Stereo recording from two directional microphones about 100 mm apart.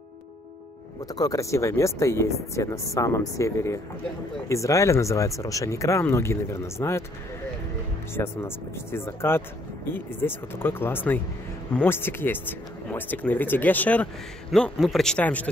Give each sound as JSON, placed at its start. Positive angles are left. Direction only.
{"t": 1.0, "sound": "speech", "side_deg": 35}
{"t": 8.1, "sound": "speech", "side_deg": 25}
{"t": 14.5, "sound": "a man's voice", "side_deg": 0}
{"t": 15.1, "sound": "speech", "side_deg": 15}